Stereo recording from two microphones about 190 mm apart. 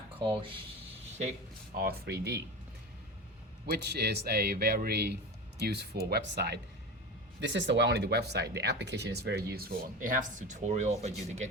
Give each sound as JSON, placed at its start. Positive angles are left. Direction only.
{"t": 0.2, "sound": "speech", "side_deg": -25}
{"t": 1.7, "sound": "speech", "side_deg": -55}
{"t": 3.7, "sound": "speech", "side_deg": -60}